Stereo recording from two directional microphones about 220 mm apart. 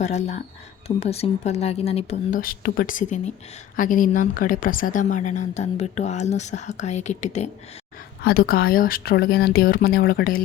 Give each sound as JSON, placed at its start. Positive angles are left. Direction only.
{"t": 0.0, "sound": "a woman's voice", "side_deg": 30}
{"t": 2.4, "sound": "a woman's voice", "side_deg": 40}
{"t": 8.2, "sound": "speech", "side_deg": 45}